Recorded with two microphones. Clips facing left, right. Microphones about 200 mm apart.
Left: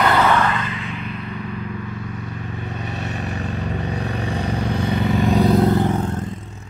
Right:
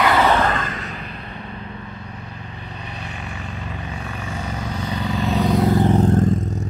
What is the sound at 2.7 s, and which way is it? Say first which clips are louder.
Vehicle: left 5 dB; 45° left (ahead or behind).